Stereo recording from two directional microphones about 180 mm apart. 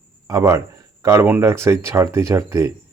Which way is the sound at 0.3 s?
15° right (ahead or behind).